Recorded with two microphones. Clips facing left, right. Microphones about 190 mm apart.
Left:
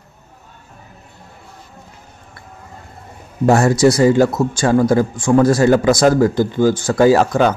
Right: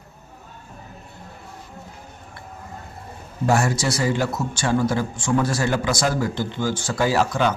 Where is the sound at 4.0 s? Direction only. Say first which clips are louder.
Left 10 dB; 45° left (ahead or behind).